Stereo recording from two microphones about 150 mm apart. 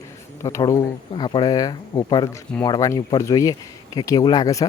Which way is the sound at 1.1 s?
30° left (ahead or behind).